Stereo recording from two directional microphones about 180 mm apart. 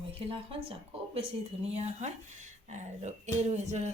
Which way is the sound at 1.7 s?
35° right (ahead or behind).